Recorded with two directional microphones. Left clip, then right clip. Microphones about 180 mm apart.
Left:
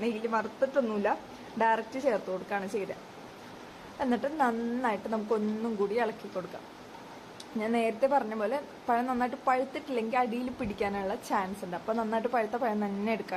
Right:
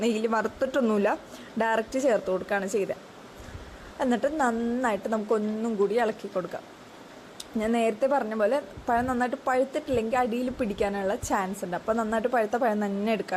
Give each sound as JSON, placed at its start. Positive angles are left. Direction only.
{"t": 0.0, "sound": "speech", "side_deg": -35}
{"t": 4.0, "sound": "a woman's voice", "side_deg": -25}
{"t": 7.6, "sound": "a woman's voice", "side_deg": -25}